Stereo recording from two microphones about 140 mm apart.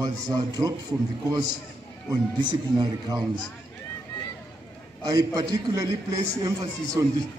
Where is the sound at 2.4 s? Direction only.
30° right (ahead or behind).